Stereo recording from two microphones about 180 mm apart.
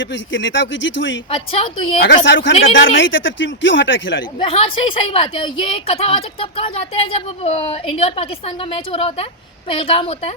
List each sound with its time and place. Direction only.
0.0 s speech: 90° left
1.3 s a woman's voice: 30° left (ahead or behind)
2.0 s speech: 70° left (ahead or behind); by 4.2 s 90° left
4.4 s a woman's voice: 30° left (ahead or behind)